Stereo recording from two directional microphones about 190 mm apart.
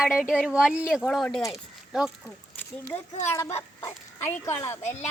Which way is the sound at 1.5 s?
Centre (ahead or behind).